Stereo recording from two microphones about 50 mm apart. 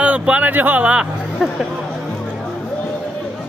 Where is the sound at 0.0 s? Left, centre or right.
Right.